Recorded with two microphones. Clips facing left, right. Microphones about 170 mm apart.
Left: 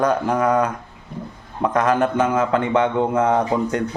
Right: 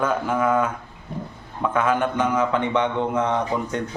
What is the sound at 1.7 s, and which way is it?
A man's voice, 40° left (ahead or behind).